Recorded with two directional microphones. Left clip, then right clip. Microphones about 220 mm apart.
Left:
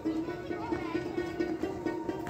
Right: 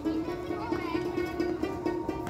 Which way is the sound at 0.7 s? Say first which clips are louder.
Right 3 dB; 50° right (ahead or behind).